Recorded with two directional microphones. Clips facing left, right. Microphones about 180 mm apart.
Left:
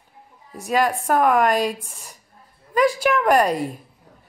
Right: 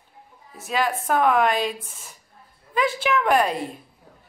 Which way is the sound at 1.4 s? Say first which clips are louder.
Left 3 dB; 40° left (ahead or behind).